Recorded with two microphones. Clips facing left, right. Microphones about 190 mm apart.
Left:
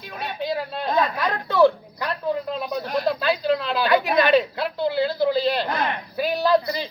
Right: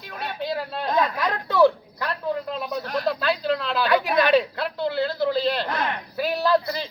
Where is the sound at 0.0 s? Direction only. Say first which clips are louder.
Left 1 dB; centre (ahead or behind).